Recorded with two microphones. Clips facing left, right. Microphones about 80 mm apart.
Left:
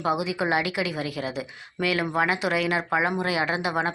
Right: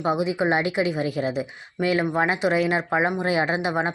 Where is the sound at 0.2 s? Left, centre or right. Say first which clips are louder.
Right 3 dB; right.